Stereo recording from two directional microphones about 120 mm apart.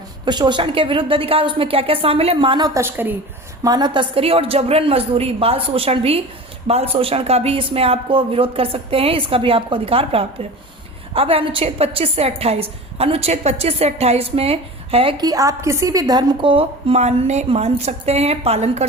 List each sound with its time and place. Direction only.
0.3 s speech: 40° right (ahead or behind)
2.6 s a woman's voice: 25° right (ahead or behind)
3.6 s a woman's voice: 35° right (ahead or behind)
4.1 s a woman's voice: 55° right (ahead or behind)
15.2 s a woman's voice: 30° right (ahead or behind); by 18.9 s 60° right (ahead or behind)